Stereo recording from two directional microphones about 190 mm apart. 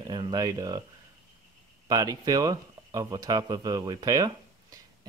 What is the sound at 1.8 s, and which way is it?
Speech, 20° right (ahead or behind).